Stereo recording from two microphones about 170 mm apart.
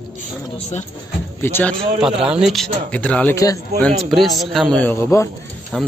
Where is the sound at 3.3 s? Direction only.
20° left (ahead or behind).